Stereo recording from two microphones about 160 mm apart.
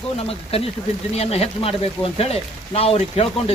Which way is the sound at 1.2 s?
40° left (ahead or behind).